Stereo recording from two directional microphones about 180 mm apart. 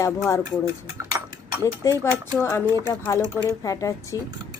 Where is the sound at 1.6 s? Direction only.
15° left (ahead or behind).